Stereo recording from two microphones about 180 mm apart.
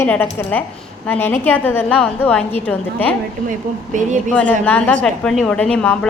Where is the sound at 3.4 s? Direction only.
45° right (ahead or behind).